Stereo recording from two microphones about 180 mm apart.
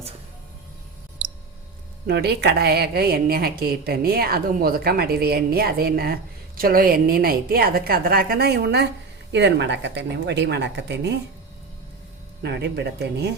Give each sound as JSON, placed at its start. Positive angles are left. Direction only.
{"t": 2.0, "sound": "a woman's voice", "side_deg": -65}
{"t": 9.3, "sound": "speech", "side_deg": -75}
{"t": 12.4, "sound": "speech", "side_deg": -70}